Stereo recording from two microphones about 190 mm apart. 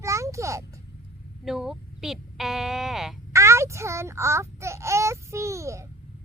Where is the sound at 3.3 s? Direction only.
15° right (ahead or behind).